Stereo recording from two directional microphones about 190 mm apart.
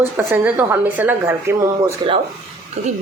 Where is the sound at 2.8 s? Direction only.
35° right (ahead or behind).